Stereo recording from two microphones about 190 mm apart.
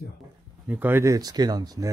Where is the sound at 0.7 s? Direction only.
10° right (ahead or behind).